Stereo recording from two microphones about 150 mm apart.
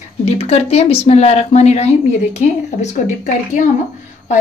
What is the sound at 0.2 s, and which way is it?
Speech, 45° left (ahead or behind).